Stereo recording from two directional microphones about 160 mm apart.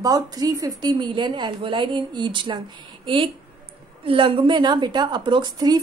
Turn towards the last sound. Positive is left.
turn(degrees=-25)  # may be behind; listen again after turning